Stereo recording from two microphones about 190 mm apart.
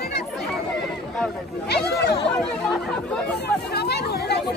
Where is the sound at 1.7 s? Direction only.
60° left (ahead or behind).